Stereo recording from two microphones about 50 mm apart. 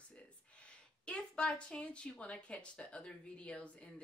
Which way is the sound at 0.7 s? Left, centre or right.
Centre.